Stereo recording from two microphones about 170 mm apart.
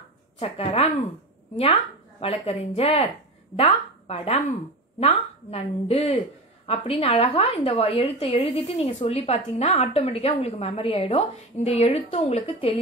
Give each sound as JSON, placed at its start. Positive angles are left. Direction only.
{"t": 0.4, "sound": "a woman's voice", "side_deg": 35}